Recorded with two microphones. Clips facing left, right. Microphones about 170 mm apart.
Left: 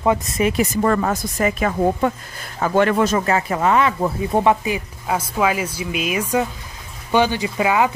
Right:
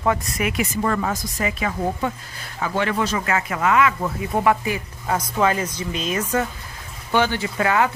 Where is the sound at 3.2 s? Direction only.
30° left (ahead or behind).